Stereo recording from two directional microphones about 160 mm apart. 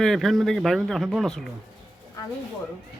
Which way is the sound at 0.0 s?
Centre (ahead or behind).